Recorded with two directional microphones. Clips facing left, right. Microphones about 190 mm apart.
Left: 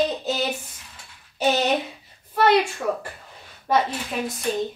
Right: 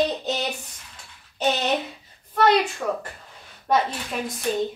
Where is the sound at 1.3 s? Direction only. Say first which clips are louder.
Left 2 dB; 10° left (ahead or behind).